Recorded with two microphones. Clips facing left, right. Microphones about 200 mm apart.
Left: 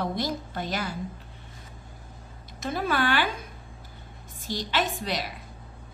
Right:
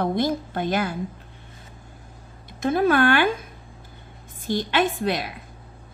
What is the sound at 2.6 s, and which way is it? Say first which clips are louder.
Speech: right 8 dB; 50° right (ahead or behind).